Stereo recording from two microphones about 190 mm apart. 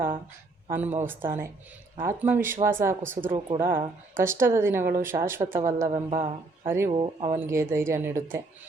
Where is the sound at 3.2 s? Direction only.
30° right (ahead or behind).